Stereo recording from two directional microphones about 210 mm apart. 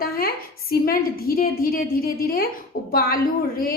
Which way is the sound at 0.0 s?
45° left (ahead or behind).